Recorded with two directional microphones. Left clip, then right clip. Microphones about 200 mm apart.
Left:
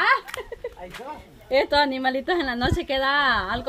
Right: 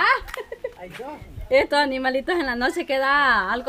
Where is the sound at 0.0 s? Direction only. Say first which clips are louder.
Right 1 dB; 5° right (ahead or behind).